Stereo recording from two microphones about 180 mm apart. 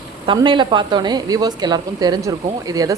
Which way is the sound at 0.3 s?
25° right (ahead or behind).